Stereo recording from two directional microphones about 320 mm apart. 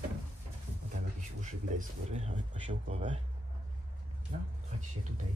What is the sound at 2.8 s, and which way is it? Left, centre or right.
Speech, centre.